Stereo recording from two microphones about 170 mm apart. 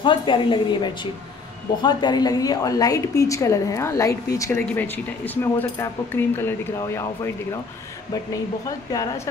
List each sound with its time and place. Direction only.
0.0 s a woman's voice: 30° left (ahead or behind)
8.6 s a woman's voice: 20° left (ahead or behind)